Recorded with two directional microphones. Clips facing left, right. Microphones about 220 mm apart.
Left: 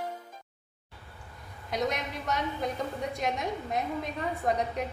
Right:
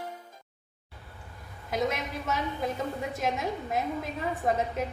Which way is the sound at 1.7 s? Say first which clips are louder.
Right 1 dB; 5° right (ahead or behind).